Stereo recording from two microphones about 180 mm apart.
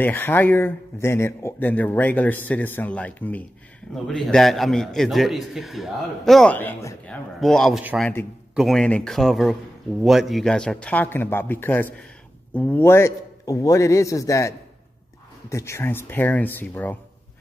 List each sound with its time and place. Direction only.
0.0 s a man's voice: 10° left (ahead or behind)
7.3 s a man's voice: centre (ahead or behind); by 14.5 s 15° left (ahead or behind)
15.5 s speech: 15° left (ahead or behind)